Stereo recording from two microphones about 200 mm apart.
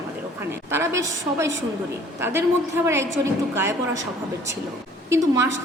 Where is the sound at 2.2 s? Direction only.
10° right (ahead or behind).